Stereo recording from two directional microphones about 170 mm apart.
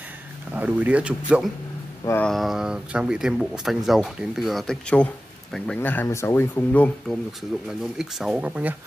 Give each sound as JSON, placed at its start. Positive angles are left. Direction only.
{"t": 0.5, "sound": "speech", "side_deg": -10}
{"t": 2.0, "sound": "speech", "side_deg": 10}
{"t": 7.8, "sound": "speech", "side_deg": 0}